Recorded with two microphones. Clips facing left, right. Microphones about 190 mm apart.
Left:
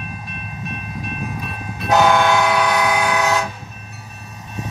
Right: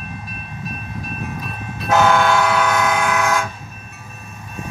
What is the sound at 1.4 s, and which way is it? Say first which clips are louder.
Train: left 1 dB; centre (ahead or behind).